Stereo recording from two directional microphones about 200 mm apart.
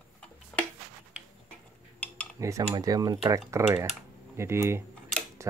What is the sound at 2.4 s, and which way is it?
Speech, 15° right (ahead or behind).